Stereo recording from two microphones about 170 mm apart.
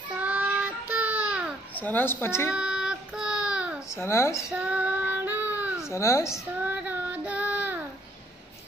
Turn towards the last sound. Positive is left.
turn(degrees=-10)  # may be behind; listen again after turning